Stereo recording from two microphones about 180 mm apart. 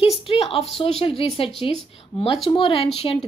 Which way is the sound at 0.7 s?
35° left (ahead or behind).